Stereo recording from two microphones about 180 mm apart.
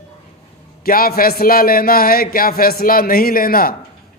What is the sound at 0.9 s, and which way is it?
Speech, 55° left (ahead or behind).